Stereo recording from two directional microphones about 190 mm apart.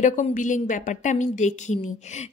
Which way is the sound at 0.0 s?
40° left (ahead or behind).